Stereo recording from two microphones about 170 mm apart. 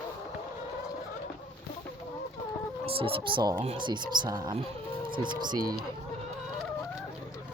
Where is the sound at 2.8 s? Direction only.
35° right (ahead or behind).